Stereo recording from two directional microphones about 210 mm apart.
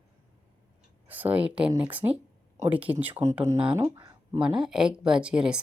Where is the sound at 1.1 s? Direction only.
10° right (ahead or behind).